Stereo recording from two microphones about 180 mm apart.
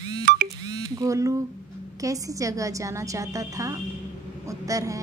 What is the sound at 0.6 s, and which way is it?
A woman's voice, 20° right (ahead or behind).